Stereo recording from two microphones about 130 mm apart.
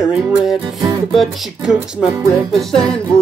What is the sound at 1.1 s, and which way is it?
Music, centre (ahead or behind).